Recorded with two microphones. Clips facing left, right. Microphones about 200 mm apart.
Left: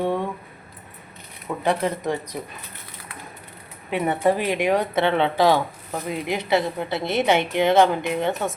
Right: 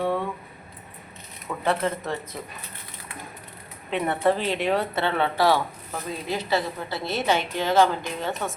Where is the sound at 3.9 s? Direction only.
10° left (ahead or behind).